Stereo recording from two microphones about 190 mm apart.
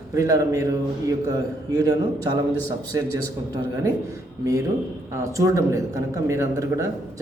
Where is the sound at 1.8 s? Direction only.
20° right (ahead or behind).